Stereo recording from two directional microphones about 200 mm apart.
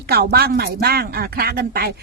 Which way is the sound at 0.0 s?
50° right (ahead or behind).